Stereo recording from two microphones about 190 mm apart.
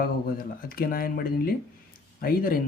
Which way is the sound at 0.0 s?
50° left (ahead or behind).